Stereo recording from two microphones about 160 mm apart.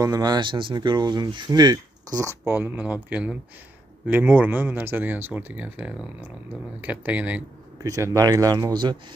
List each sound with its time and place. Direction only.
0.0 s speech: 25° right (ahead or behind)
7.8 s speech: 20° right (ahead or behind)